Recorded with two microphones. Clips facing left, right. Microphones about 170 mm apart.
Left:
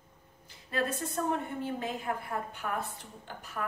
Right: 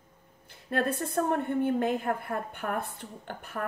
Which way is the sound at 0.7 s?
55° right (ahead or behind).